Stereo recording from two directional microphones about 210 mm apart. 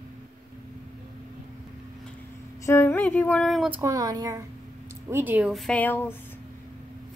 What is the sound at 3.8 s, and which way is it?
Speech, 15° right (ahead or behind).